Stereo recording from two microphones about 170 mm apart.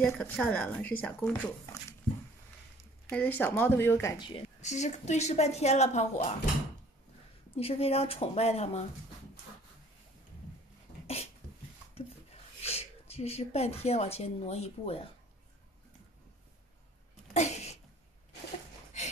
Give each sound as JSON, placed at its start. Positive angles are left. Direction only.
{"t": 0.0, "sound": "speech", "side_deg": 5}
{"t": 4.6, "sound": "a woman's voice", "side_deg": 45}
{"t": 7.5, "sound": "a woman's voice", "side_deg": 35}
{"t": 12.6, "sound": "speech", "side_deg": 35}
{"t": 17.3, "sound": "a sound", "side_deg": 40}